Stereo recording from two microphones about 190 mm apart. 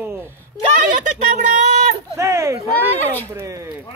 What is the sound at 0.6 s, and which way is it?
Speech, 40° right (ahead or behind).